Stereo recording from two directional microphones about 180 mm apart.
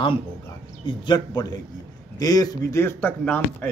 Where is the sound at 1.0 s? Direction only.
25° left (ahead or behind).